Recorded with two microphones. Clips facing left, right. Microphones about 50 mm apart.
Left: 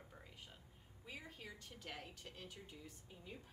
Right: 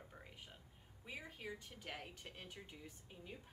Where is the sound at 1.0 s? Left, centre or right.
Centre.